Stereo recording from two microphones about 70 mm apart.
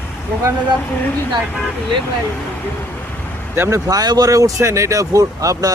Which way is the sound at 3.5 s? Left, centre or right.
Right.